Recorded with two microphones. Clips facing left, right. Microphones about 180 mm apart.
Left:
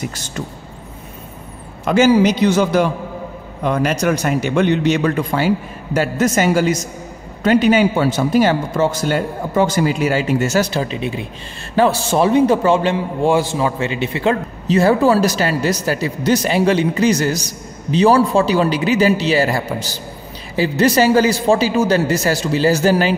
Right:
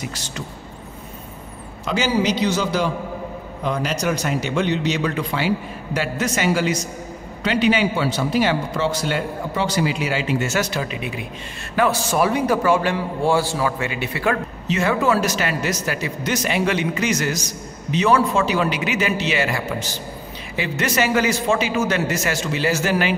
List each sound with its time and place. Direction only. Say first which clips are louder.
0.0 s speech: left 4 dB; 45° left (ahead or behind)
1.9 s a man's voice: left 8 dB; 50° left (ahead or behind); by 14.4 s 25° left (ahead or behind)
14.7 s speech: left 6 dB; 35° left (ahead or behind)